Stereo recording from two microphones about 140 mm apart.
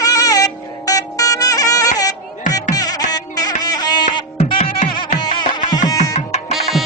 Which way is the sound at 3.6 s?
30° left (ahead or behind).